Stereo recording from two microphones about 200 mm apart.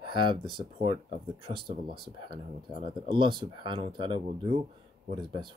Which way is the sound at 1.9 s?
25° right (ahead or behind).